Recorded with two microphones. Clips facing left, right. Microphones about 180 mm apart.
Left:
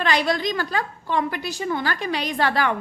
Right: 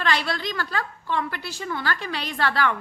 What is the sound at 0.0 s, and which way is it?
A woman's voice, 15° left (ahead or behind).